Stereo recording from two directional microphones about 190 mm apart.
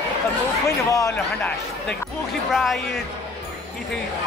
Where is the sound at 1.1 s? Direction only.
5° left (ahead or behind).